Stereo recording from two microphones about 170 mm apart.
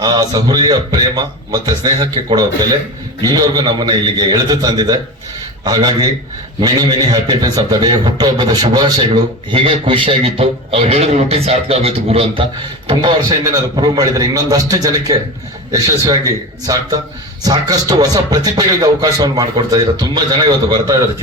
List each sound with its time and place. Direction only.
0.0 s a man's voice: 25° right (ahead or behind)